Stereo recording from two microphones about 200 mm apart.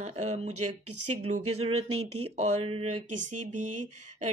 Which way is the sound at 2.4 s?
30° right (ahead or behind).